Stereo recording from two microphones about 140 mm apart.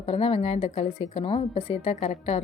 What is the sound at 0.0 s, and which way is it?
A woman's voice, 45° left (ahead or behind).